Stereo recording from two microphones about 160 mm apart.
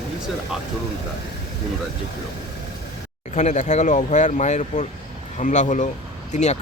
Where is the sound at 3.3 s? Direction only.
45° left (ahead or behind).